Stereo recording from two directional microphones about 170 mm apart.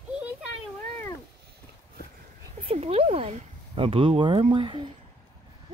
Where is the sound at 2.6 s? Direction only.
40° right (ahead or behind).